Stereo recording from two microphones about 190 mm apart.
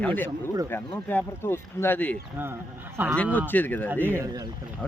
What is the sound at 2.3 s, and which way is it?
Speech, 10° right (ahead or behind).